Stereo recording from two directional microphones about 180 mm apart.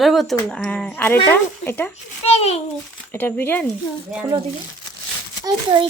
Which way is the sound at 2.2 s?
35° left (ahead or behind).